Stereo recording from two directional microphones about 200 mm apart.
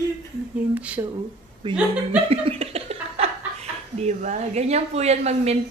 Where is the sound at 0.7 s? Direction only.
5° right (ahead or behind).